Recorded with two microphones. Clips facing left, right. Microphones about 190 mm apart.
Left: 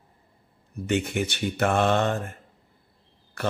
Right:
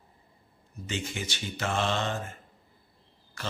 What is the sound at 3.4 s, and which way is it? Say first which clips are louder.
Speech: left 9 dB; 60° left (ahead or behind).